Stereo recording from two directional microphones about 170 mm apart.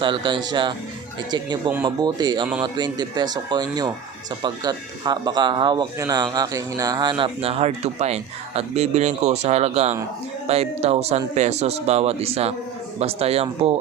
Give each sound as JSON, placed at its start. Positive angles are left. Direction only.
{"t": 0.0, "sound": "a man's voice", "side_deg": -30}